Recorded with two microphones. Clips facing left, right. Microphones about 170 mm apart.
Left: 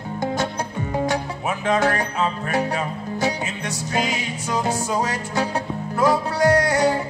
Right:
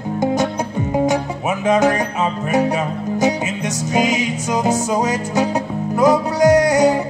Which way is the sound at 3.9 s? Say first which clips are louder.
Right 7 dB; 20° right (ahead or behind).